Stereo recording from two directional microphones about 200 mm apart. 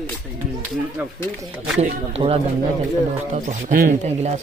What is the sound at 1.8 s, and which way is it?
Speech, 30° right (ahead or behind).